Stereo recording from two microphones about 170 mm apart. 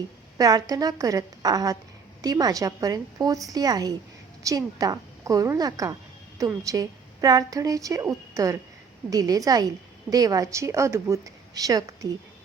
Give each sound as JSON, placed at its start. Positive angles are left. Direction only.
{"t": 0.3, "sound": "a woman's voice", "side_deg": -20}